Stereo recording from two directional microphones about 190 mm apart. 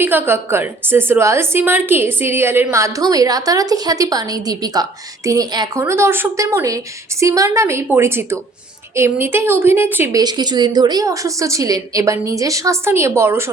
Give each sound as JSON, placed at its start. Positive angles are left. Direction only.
{"t": 0.0, "sound": "a woman's voice", "side_deg": -10}